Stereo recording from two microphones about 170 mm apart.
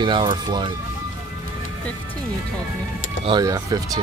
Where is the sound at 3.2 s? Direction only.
25° right (ahead or behind).